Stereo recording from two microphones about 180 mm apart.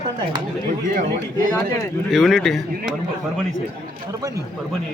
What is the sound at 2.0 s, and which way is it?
Speech, centre (ahead or behind).